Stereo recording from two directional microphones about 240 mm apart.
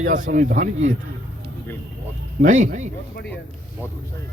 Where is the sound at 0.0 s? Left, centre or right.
Right.